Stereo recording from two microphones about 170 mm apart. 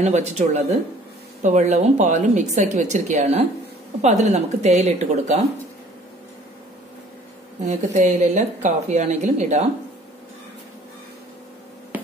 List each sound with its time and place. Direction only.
0.0 s a woman's voice: 40° right (ahead or behind)
7.6 s a woman's voice: 45° right (ahead or behind)
11.9 s a sound: 10° right (ahead or behind)